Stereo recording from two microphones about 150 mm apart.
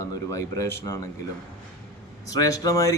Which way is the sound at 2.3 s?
25° left (ahead or behind).